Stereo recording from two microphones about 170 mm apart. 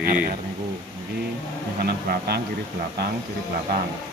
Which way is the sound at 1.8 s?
65° right (ahead or behind).